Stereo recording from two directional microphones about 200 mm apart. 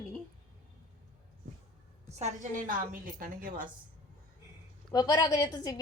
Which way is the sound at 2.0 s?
35° right (ahead or behind).